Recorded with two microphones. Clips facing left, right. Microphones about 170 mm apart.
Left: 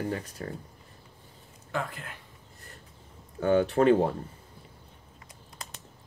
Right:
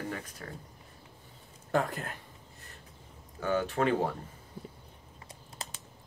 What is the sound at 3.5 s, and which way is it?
Speech, 35° left (ahead or behind).